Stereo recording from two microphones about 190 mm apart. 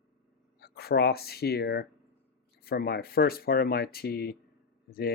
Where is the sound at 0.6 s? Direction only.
55° left (ahead or behind).